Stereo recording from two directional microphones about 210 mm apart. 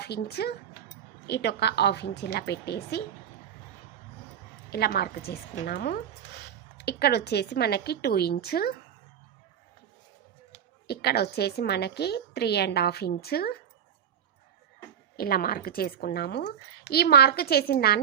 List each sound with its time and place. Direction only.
0.0 s speech: 50° left (ahead or behind)
4.7 s speech: 50° left (ahead or behind)
10.8 s speech: 50° left (ahead or behind)
15.1 s speech: 45° left (ahead or behind)